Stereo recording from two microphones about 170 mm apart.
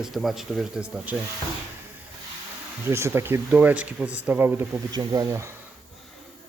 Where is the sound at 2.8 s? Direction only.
15° right (ahead or behind).